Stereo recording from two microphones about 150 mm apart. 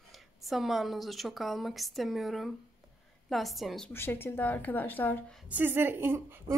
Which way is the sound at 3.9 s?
15° left (ahead or behind).